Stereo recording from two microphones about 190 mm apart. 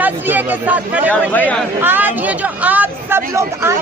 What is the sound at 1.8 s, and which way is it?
Speech, 10° right (ahead or behind).